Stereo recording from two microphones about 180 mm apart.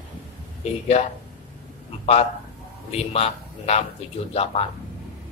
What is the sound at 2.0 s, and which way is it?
A man's voice, 35° left (ahead or behind).